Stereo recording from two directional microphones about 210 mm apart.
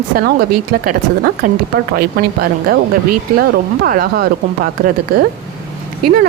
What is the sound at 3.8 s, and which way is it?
Speech, 45° right (ahead or behind).